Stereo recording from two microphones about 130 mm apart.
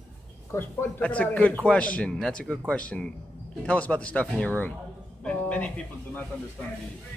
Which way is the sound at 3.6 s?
10° left (ahead or behind).